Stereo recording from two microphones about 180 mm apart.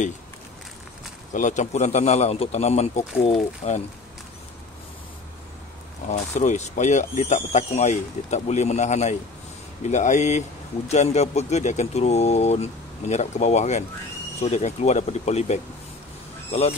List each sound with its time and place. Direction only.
1.3 s speech: 40° left (ahead or behind)
6.0 s speech: 40° left (ahead or behind)